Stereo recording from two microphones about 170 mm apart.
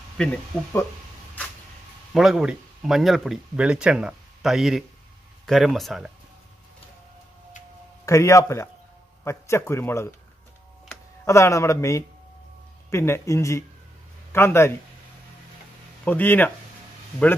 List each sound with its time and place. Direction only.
0.2 s speech: 5° left (ahead or behind)
2.1 s speech: 5° right (ahead or behind)
8.0 s speech: 20° left (ahead or behind)
11.2 s speech: 15° left (ahead or behind)
16.0 s speech: 10° left (ahead or behind)